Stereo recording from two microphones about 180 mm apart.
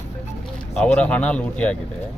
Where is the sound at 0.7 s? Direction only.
5° left (ahead or behind).